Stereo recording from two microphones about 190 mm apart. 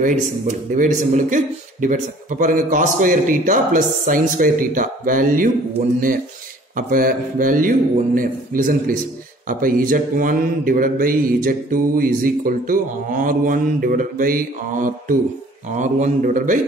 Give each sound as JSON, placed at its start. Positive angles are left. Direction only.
{"t": 0.5, "sound": "mantra", "side_deg": -40}
{"t": 6.9, "sound": "mantra", "side_deg": -45}
{"t": 15.7, "sound": "a man's voice", "side_deg": -40}